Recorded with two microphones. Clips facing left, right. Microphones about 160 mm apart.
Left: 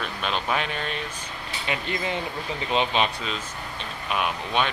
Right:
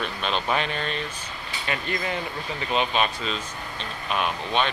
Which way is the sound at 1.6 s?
20° left (ahead or behind).